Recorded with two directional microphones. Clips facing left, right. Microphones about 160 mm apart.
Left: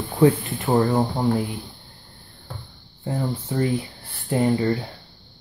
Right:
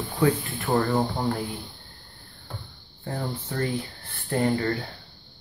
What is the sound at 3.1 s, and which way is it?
Speech, 10° left (ahead or behind).